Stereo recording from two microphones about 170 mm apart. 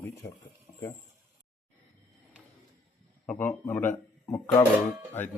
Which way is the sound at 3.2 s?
10° left (ahead or behind).